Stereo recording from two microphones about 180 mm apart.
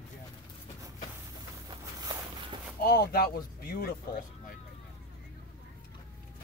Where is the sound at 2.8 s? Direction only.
60° left (ahead or behind).